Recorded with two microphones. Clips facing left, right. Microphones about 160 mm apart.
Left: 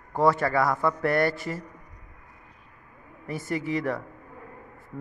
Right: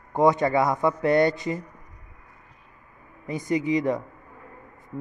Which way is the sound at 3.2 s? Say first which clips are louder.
Right 5 dB; 20° right (ahead or behind).